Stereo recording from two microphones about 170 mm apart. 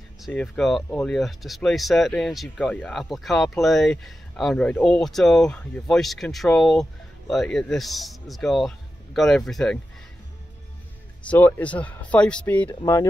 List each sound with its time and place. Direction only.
0.3 s speech: 5° left (ahead or behind)
11.2 s speech: 10° left (ahead or behind)
12.8 s speech: 20° left (ahead or behind)